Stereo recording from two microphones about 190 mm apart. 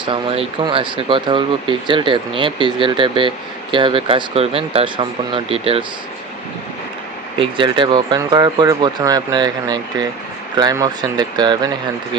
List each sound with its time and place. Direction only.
0.0 s speech: 30° right (ahead or behind)
7.3 s speech: 25° right (ahead or behind)